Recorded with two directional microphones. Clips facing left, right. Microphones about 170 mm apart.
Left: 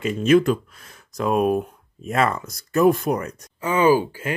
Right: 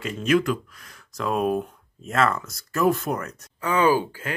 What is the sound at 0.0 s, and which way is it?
Speech, 25° left (ahead or behind).